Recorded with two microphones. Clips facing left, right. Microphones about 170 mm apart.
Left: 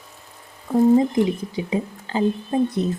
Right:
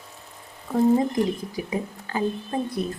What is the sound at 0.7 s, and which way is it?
Speech, 20° left (ahead or behind).